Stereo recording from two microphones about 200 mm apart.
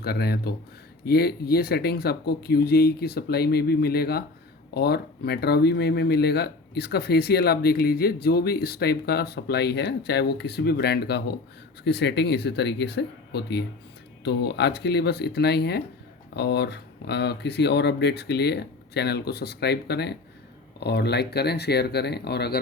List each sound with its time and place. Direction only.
0.0 s speech: 50° left (ahead or behind)